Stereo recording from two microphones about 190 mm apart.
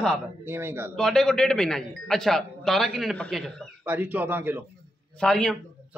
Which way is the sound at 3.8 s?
10° right (ahead or behind).